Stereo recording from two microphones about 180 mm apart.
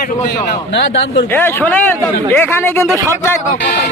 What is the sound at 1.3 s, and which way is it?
A man's voice, 10° left (ahead or behind).